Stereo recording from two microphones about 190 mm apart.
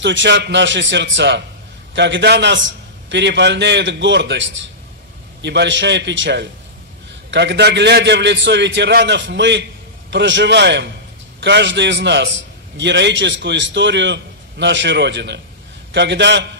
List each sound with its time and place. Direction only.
0.0 s a man's voice: 70° right (ahead or behind)